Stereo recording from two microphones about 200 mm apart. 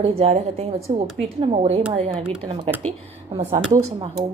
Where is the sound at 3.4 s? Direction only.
30° right (ahead or behind).